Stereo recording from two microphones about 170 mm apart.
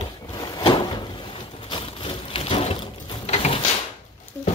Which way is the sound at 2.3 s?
35° left (ahead or behind).